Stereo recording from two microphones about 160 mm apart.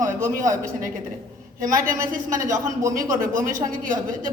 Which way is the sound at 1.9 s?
20° right (ahead or behind).